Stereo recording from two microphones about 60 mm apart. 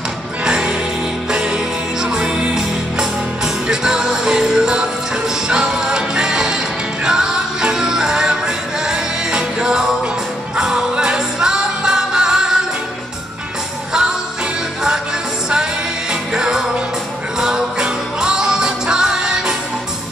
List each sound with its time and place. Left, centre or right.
0.4 s music: centre
15.5 s music: centre